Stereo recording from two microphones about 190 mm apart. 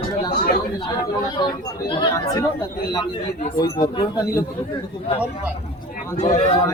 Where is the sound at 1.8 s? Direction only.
20° left (ahead or behind).